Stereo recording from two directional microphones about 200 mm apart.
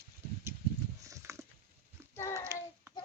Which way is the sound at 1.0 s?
15° right (ahead or behind).